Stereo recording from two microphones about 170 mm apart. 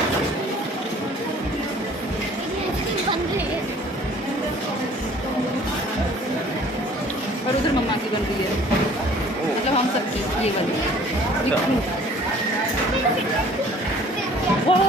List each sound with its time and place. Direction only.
14.7 s music: 35° left (ahead or behind)